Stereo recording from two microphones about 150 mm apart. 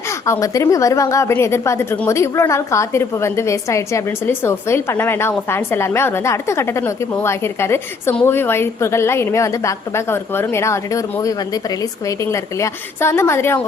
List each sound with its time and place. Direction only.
0.3 s a woman's voice: 20° left (ahead or behind)